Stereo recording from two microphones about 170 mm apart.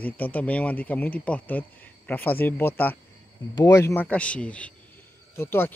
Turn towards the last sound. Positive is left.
turn(degrees=15)  # may be behind; listen again after turning